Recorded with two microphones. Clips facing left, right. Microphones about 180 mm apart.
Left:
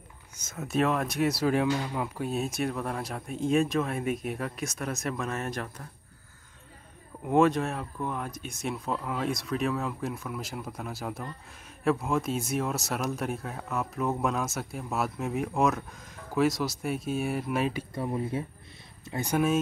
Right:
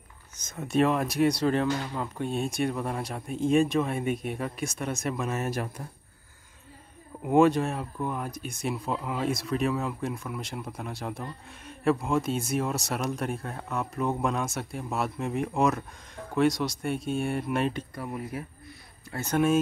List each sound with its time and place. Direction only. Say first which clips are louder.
0.4 s speech: right 3 dB; 5° left (ahead or behind)
7.2 s speech: right 2 dB; centre (ahead or behind)
17.9 s speech: left 4 dB; 25° left (ahead or behind)
19.3 s speech: right 2 dB; centre (ahead or behind)